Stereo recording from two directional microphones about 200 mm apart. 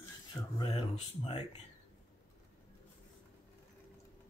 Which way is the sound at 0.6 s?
25° left (ahead or behind).